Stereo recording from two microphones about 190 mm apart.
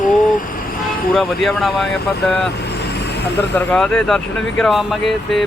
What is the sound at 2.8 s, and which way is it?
Vehicle, 60° left (ahead or behind).